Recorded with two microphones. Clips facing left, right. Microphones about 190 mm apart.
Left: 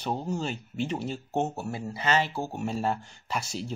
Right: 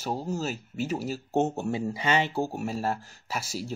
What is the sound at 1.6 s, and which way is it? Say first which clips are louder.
Speech: right 4 dB; 15° right (ahead or behind).